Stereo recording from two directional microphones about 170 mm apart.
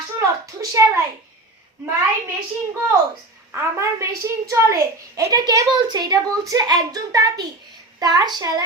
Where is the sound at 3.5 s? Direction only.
15° right (ahead or behind).